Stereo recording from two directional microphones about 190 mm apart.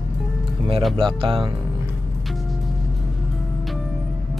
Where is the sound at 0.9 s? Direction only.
25° right (ahead or behind).